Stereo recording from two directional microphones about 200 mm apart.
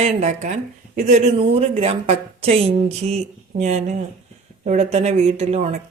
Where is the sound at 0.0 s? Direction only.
35° right (ahead or behind).